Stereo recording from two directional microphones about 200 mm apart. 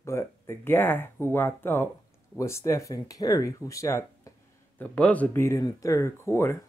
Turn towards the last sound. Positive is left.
turn(degrees=15)  # may be behind; listen again after turning